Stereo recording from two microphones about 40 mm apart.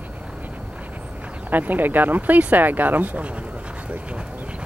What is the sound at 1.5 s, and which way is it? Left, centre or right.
Speech, right.